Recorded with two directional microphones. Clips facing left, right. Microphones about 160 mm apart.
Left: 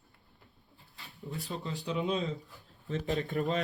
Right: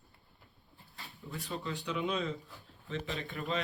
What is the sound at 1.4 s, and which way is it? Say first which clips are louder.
Speech: even; 40° left (ahead or behind).